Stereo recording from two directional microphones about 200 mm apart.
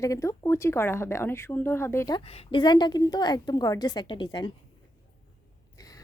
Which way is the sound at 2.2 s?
30° left (ahead or behind).